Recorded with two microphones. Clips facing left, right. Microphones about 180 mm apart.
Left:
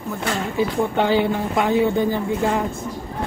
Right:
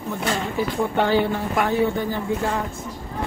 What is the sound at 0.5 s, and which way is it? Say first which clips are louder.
Speech: left 4 dB; 15° left (ahead or behind).